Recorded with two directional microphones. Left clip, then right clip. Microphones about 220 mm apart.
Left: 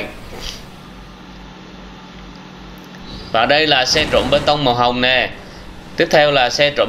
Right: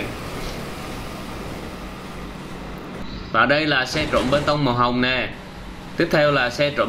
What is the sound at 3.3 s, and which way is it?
Speech, 15° right (ahead or behind).